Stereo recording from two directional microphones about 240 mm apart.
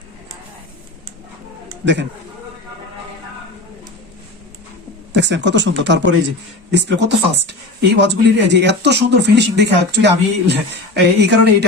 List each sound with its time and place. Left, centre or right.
1.8 s speech: right
5.1 s speech: right